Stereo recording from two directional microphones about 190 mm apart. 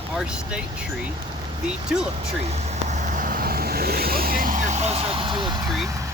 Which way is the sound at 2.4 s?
35° right (ahead or behind).